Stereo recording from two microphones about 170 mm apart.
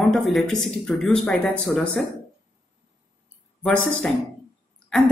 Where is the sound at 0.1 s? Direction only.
Centre (ahead or behind).